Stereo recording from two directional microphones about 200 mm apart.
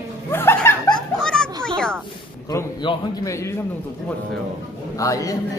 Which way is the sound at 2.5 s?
20° left (ahead or behind).